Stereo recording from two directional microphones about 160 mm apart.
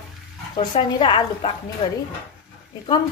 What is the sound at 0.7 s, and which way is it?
A woman's voice, 35° left (ahead or behind).